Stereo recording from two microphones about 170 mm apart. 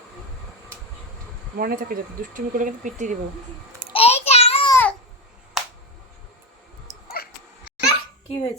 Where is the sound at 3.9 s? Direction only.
35° left (ahead or behind).